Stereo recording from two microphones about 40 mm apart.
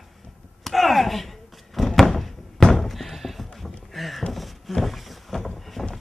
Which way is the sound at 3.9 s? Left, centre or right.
Centre.